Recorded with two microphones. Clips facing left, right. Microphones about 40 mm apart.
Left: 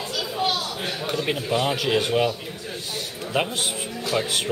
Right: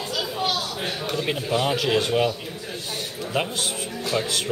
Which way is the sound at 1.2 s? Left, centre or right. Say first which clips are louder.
Even; centre.